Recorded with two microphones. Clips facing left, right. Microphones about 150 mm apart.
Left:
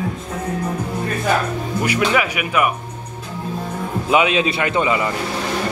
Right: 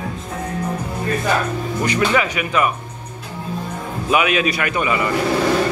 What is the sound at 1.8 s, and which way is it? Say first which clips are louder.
Speech: even; 10° left (ahead or behind).